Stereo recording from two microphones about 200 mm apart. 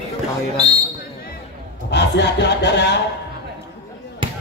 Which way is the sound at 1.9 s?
60° left (ahead or behind).